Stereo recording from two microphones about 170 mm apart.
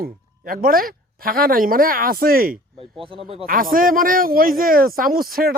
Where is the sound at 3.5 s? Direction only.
55° right (ahead or behind).